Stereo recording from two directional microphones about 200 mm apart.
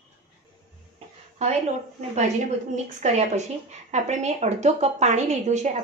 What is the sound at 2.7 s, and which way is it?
A woman's voice, 35° right (ahead or behind).